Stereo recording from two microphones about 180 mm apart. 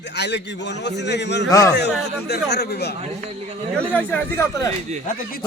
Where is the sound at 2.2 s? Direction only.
65° left (ahead or behind).